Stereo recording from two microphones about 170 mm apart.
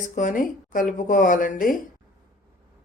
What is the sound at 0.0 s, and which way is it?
A woman's voice, 50° left (ahead or behind).